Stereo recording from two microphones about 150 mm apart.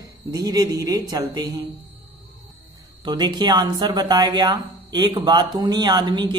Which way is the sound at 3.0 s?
30° right (ahead or behind).